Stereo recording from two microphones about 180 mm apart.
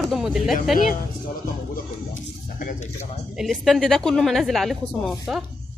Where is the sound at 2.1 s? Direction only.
45° left (ahead or behind).